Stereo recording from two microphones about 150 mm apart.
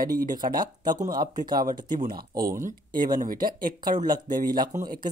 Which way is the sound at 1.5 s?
70° right (ahead or behind).